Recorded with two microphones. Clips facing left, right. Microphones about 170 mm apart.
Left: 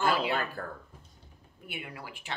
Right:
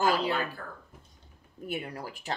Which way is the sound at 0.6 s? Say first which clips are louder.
Left 4 dB; 40° left (ahead or behind).